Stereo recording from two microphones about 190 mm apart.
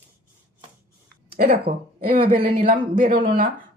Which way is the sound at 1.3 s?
55° right (ahead or behind).